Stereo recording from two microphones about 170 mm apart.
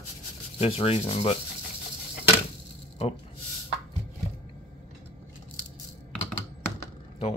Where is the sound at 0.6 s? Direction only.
35° left (ahead or behind).